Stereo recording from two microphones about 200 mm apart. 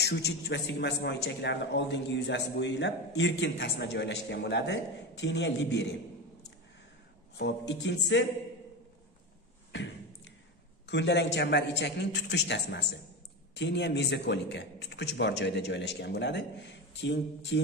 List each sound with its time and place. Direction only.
0.0 s a man's voice: 55° left (ahead or behind)
7.3 s a man's voice: 60° left (ahead or behind)
9.7 s beatboxing: 65° left (ahead or behind)
10.9 s a man's voice: 60° left (ahead or behind)